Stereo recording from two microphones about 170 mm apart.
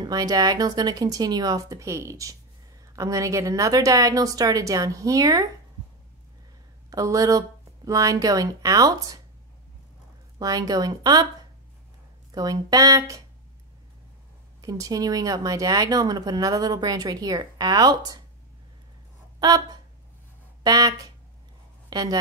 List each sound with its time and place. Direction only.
0.0 s speech: 20° right (ahead or behind)
6.9 s speech: 20° right (ahead or behind)
10.4 s speech: 20° right (ahead or behind)
12.3 s speech: 20° right (ahead or behind)
14.6 s speech: 20° right (ahead or behind)
19.4 s speech: 20° right (ahead or behind)